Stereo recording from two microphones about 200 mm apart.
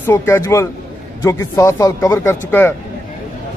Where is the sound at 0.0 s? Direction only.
10° left (ahead or behind).